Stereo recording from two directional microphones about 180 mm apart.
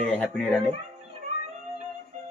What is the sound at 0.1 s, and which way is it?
Speech, 5° left (ahead or behind).